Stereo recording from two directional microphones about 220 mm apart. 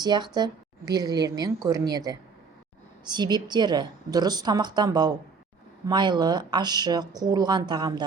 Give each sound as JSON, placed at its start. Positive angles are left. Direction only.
{"t": 0.0, "sound": "a woman's voice", "side_deg": -20}